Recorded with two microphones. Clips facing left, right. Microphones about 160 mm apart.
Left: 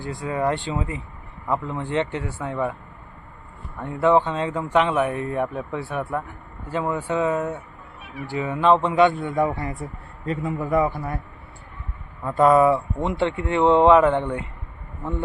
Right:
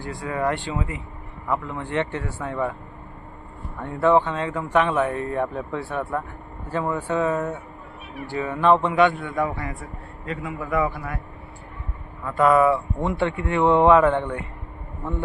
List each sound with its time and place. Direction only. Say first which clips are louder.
0.0 s speech: left 1 dB; 20° left (ahead or behind)
3.8 s a man's voice: even; 15° left (ahead or behind); by 11.2 s 30° left (ahead or behind)
12.2 s speech: left 2 dB; 25° left (ahead or behind)